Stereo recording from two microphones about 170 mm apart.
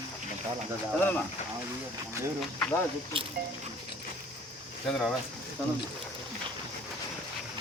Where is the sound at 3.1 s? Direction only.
30° right (ahead or behind).